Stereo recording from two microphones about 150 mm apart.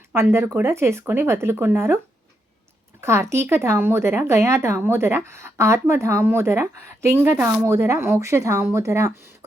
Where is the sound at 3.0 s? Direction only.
15° right (ahead or behind).